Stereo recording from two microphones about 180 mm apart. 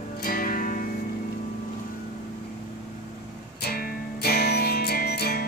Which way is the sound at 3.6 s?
60° left (ahead or behind).